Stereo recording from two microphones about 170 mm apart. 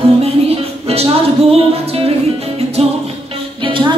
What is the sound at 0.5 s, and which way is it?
Music, 35° right (ahead or behind).